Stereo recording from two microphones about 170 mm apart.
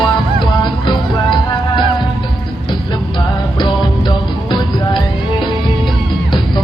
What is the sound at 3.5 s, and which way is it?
Music, 25° left (ahead or behind).